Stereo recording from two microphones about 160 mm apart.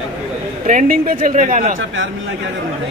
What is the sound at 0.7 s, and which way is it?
Speech, 60° right (ahead or behind).